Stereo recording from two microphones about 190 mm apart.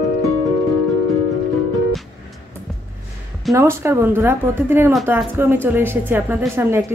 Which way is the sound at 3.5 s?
15° right (ahead or behind).